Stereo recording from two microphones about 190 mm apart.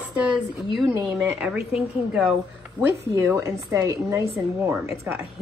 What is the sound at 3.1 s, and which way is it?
A woman's voice, 15° right (ahead or behind).